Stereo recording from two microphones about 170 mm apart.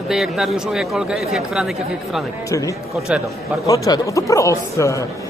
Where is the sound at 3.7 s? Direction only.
20° left (ahead or behind).